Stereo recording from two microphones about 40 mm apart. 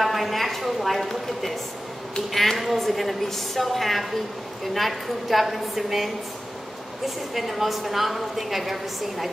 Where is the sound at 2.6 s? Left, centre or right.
Centre.